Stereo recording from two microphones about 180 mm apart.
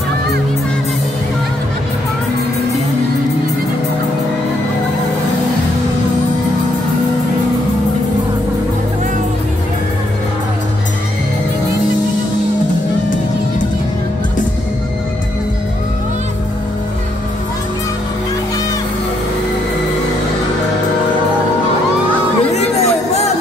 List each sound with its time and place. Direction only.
22.5 s music: 35° left (ahead or behind)